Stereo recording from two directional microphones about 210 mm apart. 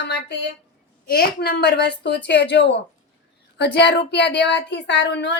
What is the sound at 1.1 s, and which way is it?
A woman's voice, 45° left (ahead or behind).